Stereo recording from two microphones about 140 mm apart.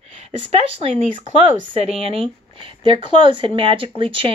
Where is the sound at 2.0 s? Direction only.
40° right (ahead or behind).